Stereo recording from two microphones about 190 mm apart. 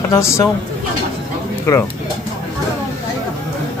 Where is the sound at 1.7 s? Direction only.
15° left (ahead or behind).